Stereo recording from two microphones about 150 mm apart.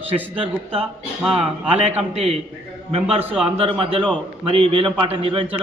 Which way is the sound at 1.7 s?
45° right (ahead or behind).